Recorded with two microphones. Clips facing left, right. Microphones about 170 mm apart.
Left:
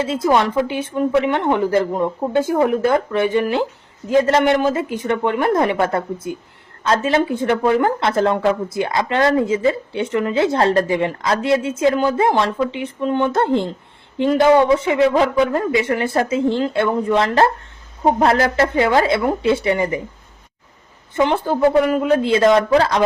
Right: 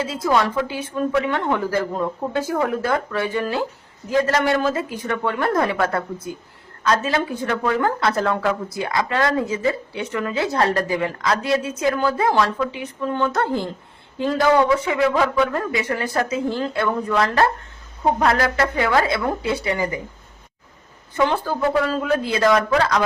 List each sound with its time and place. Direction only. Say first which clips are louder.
0.0 s a woman's voice: left 3 dB; 25° left (ahead or behind)
21.2 s a woman's voice: left 4 dB; 20° left (ahead or behind)